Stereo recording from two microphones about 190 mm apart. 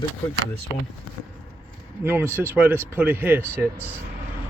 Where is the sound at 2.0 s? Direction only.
10° right (ahead or behind).